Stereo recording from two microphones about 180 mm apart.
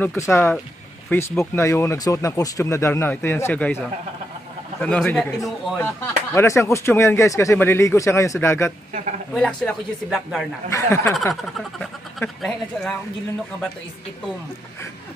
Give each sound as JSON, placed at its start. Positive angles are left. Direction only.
{"t": 0.0, "sound": "speech", "side_deg": 15}
{"t": 6.3, "sound": "speech", "side_deg": 15}
{"t": 10.7, "sound": "speech", "side_deg": 15}
{"t": 11.8, "sound": "speech", "side_deg": 0}